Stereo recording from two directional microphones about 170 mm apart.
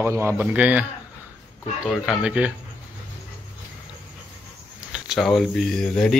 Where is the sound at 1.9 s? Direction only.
5° right (ahead or behind).